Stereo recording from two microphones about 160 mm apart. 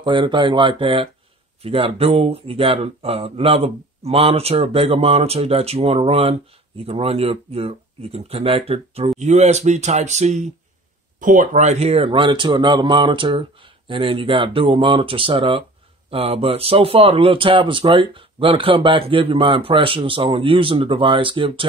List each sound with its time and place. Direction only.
0.0 s speech: 30° right (ahead or behind)